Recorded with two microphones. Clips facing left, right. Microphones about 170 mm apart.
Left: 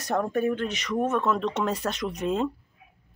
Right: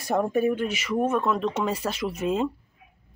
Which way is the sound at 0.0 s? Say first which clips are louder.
Right 2 dB; 5° right (ahead or behind).